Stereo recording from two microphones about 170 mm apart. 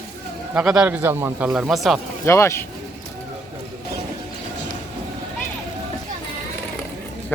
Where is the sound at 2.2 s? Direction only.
15° left (ahead or behind).